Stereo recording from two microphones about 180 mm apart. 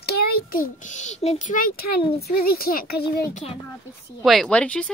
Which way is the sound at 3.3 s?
40° left (ahead or behind).